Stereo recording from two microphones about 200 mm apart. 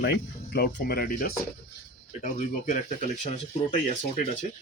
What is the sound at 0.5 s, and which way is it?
Speech, 50° left (ahead or behind).